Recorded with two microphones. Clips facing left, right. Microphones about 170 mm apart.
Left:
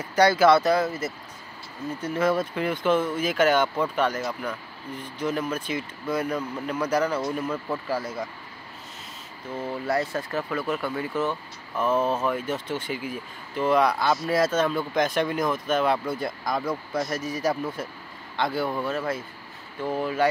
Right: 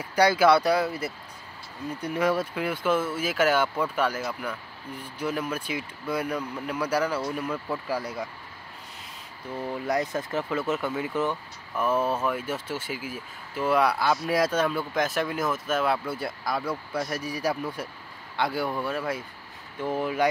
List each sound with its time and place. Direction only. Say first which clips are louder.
0.0 s speech: left 2 dB; 10° right (ahead or behind)
7.5 s speech: left 1 dB; 5° left (ahead or behind)
7.9 s speech: left 1 dB; 15° right (ahead or behind)
9.8 s speech: left 1 dB; 15° right (ahead or behind)